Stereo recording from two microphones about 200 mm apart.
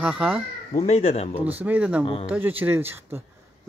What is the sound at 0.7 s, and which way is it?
Speech, 30° left (ahead or behind).